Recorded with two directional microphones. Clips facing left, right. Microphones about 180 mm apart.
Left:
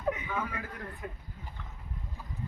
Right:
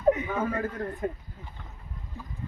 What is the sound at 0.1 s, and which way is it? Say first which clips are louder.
A man's voice: right 9 dB; 45° right (ahead or behind).